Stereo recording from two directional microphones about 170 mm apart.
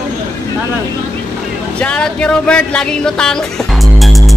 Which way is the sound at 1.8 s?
5° left (ahead or behind).